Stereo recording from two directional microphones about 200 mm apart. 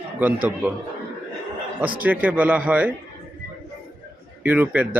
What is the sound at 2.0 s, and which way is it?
Speech, 5° right (ahead or behind).